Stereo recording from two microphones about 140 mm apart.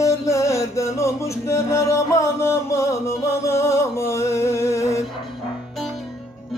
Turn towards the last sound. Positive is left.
turn(degrees=20)  # may be behind; listen again after turning